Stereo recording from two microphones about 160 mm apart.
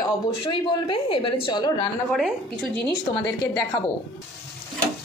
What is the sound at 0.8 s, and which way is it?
A woman's voice, 30° left (ahead or behind).